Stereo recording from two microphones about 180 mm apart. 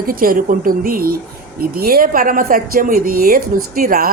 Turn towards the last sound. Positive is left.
turn(degrees=-50)  # may be behind; listen again after turning